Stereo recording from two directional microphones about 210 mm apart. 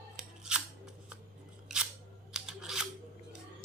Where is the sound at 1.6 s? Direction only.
5° right (ahead or behind).